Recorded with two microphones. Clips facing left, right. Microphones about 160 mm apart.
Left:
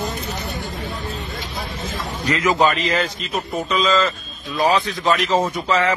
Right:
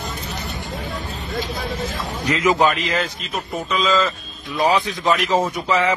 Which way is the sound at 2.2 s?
20° right (ahead or behind).